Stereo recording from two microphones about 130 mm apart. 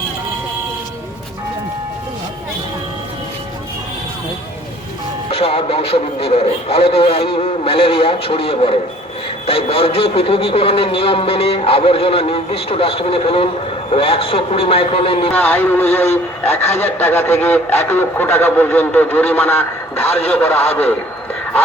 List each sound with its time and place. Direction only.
5.3 s a man's voice: 45° left (ahead or behind)
15.3 s speech: 15° left (ahead or behind)